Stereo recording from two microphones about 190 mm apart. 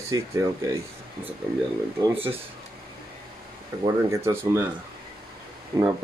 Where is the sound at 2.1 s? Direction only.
30° right (ahead or behind).